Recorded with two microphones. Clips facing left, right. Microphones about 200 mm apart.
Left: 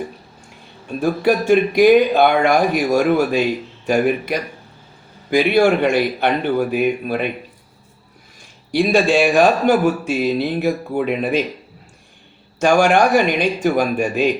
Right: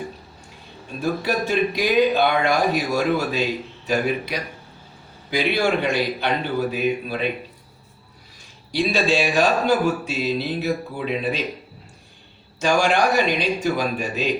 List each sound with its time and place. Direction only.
1.2 s speech: 55° left (ahead or behind)
8.7 s speech: 50° left (ahead or behind)
12.5 s speech: 50° left (ahead or behind)